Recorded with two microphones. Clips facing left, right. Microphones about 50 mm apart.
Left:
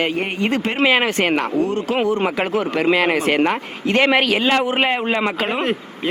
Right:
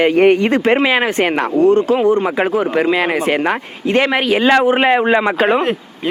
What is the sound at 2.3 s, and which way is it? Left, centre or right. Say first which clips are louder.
Speech: right 5 dB; centre.